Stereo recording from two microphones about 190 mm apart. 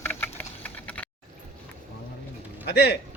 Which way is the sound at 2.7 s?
60° left (ahead or behind).